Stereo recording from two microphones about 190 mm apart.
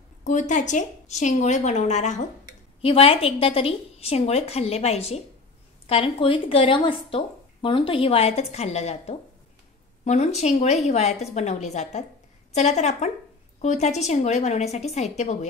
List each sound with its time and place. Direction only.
0.2 s a woman's voice: 40° left (ahead or behind)